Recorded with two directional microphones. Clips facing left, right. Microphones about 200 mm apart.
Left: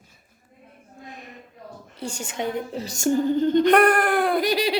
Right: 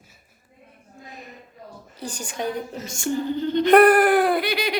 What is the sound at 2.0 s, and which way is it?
Speech, 25° left (ahead or behind).